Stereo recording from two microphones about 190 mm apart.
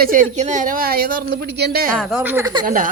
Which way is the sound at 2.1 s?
10° right (ahead or behind).